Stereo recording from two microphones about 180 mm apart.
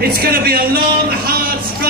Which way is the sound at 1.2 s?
55° right (ahead or behind).